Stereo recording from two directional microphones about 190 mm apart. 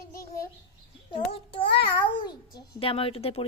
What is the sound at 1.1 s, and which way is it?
A child's voice, 30° left (ahead or behind).